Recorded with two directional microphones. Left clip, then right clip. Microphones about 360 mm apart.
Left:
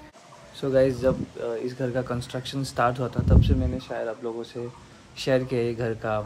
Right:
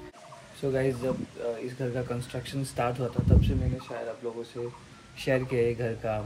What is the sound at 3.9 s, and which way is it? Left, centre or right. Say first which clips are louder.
Speech: left 6 dB; centre.